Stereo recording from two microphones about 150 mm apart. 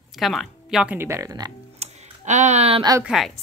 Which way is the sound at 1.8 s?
50° right (ahead or behind).